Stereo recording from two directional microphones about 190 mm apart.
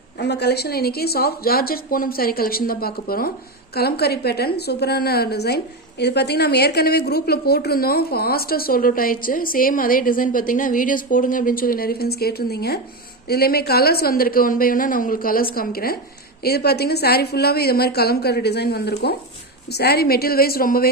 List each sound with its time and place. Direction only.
0.2 s a woman's voice: 60° left (ahead or behind)